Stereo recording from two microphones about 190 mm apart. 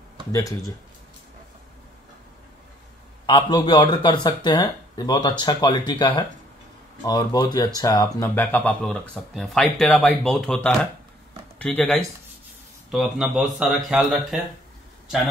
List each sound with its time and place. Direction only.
0.3 s speech: 15° left (ahead or behind)
3.3 s speech: 25° left (ahead or behind); by 14.4 s 5° right (ahead or behind)